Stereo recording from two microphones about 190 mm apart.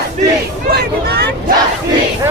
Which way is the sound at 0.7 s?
60° right (ahead or behind).